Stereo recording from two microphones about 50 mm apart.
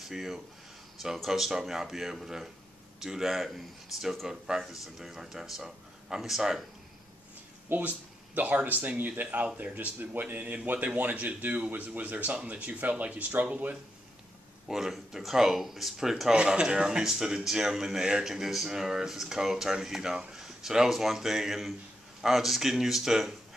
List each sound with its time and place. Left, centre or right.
0.0 s speech: centre
7.7 s a man's voice: right
14.7 s speech: centre